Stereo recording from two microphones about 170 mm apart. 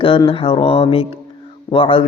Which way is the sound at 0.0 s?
30° left (ahead or behind).